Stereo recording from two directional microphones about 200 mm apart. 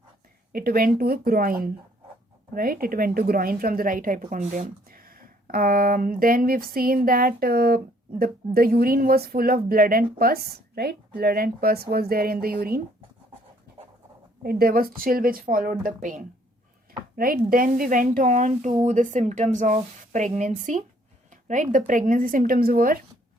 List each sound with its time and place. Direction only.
0.5 s a woman's voice: 50° right (ahead or behind)
14.4 s a woman's voice: 50° right (ahead or behind)